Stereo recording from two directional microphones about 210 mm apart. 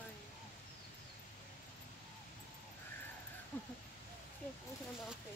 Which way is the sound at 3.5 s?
10° left (ahead or behind).